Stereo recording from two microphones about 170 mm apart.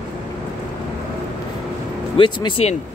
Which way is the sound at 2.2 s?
25° left (ahead or behind).